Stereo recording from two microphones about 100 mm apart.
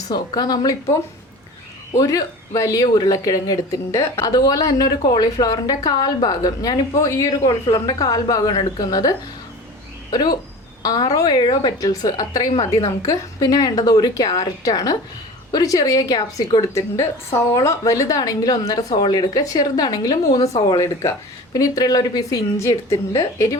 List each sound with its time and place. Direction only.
0.1 s a woman's voice: 40° left (ahead or behind)
2.0 s a woman's voice: 40° left (ahead or behind)
10.8 s a woman's voice: 45° left (ahead or behind)
12.5 s a woman's voice: 70° left (ahead or behind)
13.0 s a woman's voice: 35° left (ahead or behind)